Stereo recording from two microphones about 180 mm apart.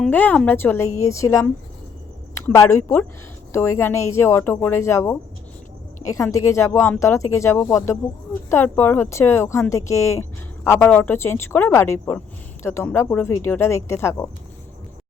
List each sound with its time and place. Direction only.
0.0 s speech: 10° left (ahead or behind)